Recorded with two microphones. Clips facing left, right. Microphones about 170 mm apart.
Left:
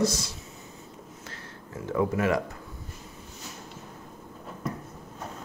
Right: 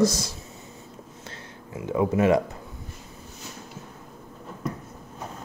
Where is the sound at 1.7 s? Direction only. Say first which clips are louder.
Right 3 dB; 15° right (ahead or behind).